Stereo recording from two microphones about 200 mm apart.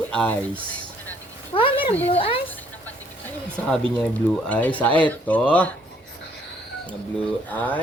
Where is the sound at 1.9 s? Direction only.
10° left (ahead or behind).